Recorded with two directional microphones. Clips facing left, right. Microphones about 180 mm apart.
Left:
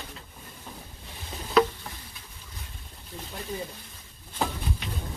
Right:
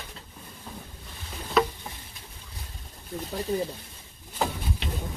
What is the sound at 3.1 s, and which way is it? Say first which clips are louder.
Speech: right 7 dB; 45° right (ahead or behind).